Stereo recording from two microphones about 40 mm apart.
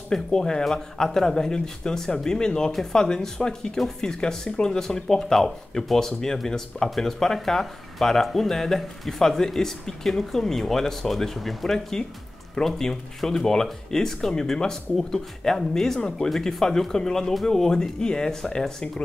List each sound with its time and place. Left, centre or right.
0.1 s speech: centre